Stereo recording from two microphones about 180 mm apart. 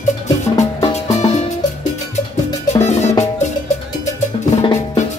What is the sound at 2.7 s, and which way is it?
Music, 40° left (ahead or behind).